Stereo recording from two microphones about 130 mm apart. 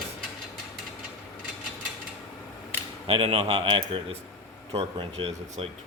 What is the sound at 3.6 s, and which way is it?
A man's voice, 40° right (ahead or behind).